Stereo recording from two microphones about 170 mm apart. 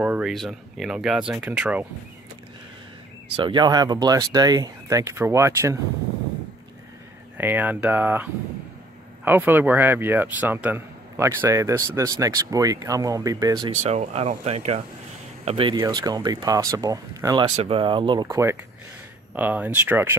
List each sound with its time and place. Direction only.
0.0 s speech: 5° right (ahead or behind)
3.3 s speech: 25° right (ahead or behind)
7.3 s speech: 10° right (ahead or behind)
13.7 s speech: 40° right (ahead or behind); by 17.5 s 20° right (ahead or behind)
17.6 s speech: 30° right (ahead or behind); by 20.2 s 10° right (ahead or behind)